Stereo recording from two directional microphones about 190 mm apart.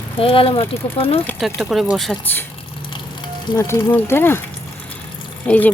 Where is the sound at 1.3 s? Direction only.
Centre (ahead or behind).